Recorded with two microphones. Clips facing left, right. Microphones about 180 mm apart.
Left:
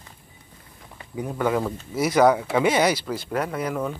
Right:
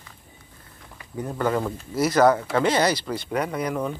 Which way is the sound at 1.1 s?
5° left (ahead or behind).